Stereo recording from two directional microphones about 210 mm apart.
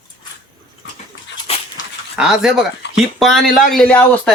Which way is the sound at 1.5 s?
30° left (ahead or behind).